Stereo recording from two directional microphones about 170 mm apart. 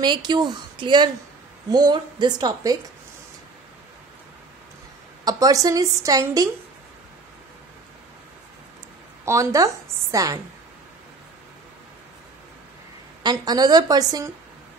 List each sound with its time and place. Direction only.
0.0 s a woman's voice: 25° right (ahead or behind)
5.2 s a woman's voice: 20° right (ahead or behind)
9.2 s a woman's voice: 15° right (ahead or behind)
13.2 s a woman's voice: 25° right (ahead or behind)